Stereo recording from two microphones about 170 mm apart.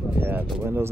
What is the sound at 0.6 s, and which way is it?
Speech, 15° right (ahead or behind).